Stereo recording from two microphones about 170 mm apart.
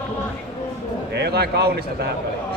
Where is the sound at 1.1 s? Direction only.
70° right (ahead or behind).